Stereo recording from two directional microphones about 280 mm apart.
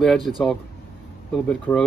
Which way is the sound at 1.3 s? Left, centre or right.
Centre.